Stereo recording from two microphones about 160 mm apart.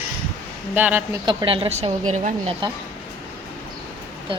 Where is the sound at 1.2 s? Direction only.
30° right (ahead or behind).